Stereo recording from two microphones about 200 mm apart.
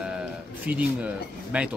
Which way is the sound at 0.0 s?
5° right (ahead or behind).